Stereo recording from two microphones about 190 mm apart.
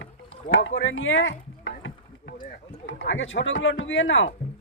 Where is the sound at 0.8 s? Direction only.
90° left; by 1.7 s 75° left (ahead or behind).